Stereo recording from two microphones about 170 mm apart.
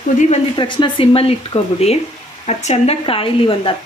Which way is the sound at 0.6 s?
30° left (ahead or behind).